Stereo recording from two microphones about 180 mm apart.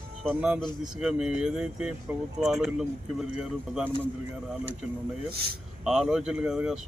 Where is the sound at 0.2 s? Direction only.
5° right (ahead or behind).